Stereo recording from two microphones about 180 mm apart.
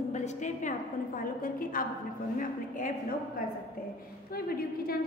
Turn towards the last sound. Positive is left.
turn(degrees=55)  # may be behind; listen again after turning